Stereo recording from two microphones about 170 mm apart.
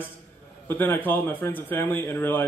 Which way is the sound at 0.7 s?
10° left (ahead or behind).